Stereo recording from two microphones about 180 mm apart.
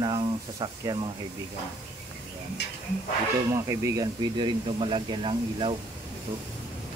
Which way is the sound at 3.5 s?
15° right (ahead or behind).